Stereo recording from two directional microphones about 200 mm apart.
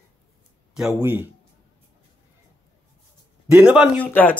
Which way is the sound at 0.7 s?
5° right (ahead or behind).